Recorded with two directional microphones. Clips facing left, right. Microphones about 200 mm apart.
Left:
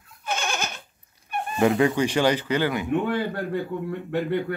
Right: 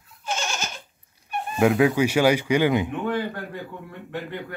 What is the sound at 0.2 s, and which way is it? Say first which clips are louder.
Goat: left 1 dB; 60° left (ahead or behind).